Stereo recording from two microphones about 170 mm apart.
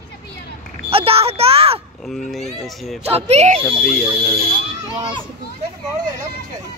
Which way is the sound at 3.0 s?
40° right (ahead or behind).